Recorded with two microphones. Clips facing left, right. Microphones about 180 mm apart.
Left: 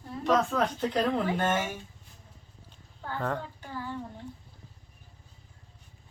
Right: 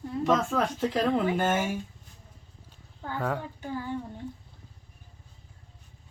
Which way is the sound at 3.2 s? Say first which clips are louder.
Right 2 dB; 10° right (ahead or behind).